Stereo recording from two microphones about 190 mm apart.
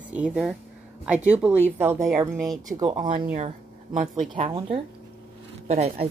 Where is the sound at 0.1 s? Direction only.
5° right (ahead or behind).